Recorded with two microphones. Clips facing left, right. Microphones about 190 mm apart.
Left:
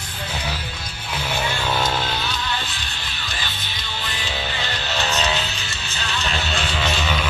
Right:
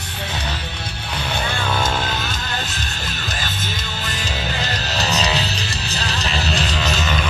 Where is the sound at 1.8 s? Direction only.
45° right (ahead or behind).